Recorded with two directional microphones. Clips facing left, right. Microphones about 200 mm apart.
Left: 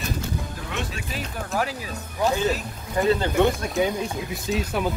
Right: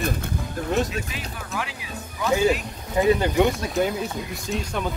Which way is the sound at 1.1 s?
40° left (ahead or behind).